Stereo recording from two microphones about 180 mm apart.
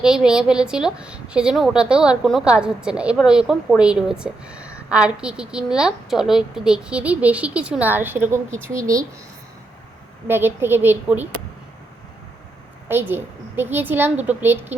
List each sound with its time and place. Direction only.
0.0 s a woman's voice: 5° right (ahead or behind)
10.2 s a child's voice: 10° right (ahead or behind)
12.9 s a child's voice: 10° right (ahead or behind)